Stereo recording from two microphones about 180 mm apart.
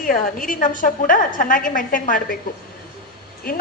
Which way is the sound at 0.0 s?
50° left (ahead or behind).